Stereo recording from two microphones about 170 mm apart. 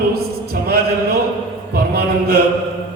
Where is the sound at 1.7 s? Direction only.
65° right (ahead or behind).